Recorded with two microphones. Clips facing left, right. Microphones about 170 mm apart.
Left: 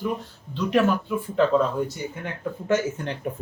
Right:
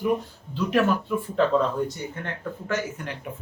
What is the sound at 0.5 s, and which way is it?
Speech, centre (ahead or behind).